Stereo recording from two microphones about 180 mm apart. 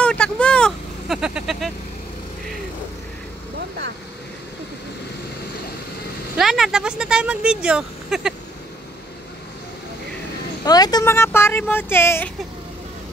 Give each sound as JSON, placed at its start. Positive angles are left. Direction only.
{"t": 0.0, "sound": "vehicle", "side_deg": 5}
{"t": 3.5, "sound": "vehicle", "side_deg": -70}
{"t": 6.3, "sound": "speech", "side_deg": 0}
{"t": 10.6, "sound": "speech", "side_deg": 20}